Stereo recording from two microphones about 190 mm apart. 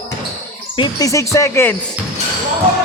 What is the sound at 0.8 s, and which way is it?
Speech, 20° left (ahead or behind).